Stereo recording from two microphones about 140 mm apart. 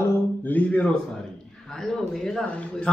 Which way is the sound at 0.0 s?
15° left (ahead or behind).